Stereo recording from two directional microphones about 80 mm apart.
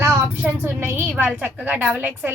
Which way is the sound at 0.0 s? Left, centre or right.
Right.